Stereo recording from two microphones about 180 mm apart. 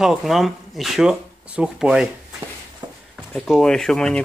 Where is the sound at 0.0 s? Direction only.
Centre (ahead or behind).